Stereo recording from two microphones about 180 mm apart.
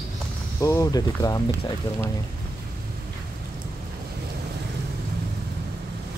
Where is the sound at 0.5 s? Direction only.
15° left (ahead or behind).